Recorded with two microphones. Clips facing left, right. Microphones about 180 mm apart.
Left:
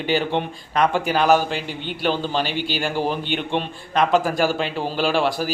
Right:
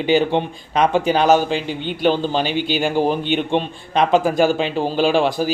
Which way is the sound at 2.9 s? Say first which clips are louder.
Right 5 dB; 15° right (ahead or behind).